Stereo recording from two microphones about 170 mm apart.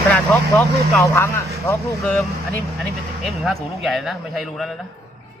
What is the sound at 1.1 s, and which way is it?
Speech, 15° left (ahead or behind).